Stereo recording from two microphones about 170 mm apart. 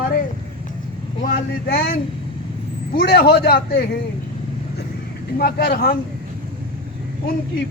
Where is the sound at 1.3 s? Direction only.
65° left (ahead or behind).